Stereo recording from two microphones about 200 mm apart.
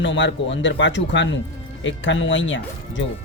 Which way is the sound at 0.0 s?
65° left (ahead or behind).